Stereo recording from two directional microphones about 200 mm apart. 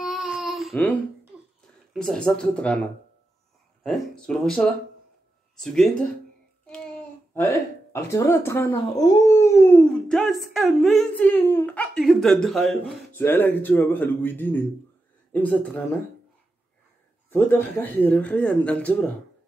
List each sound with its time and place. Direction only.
0.0 s babbling: centre (ahead or behind)
2.0 s speech: 5° left (ahead or behind)
3.8 s speech: centre (ahead or behind)
7.9 s speech: 15° left (ahead or behind)
17.3 s speech: 10° left (ahead or behind)